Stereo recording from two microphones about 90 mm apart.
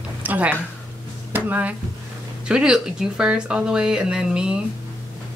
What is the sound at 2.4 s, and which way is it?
Speech, 10° right (ahead or behind).